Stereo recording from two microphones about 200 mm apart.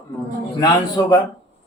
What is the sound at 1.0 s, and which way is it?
Speech, 15° left (ahead or behind).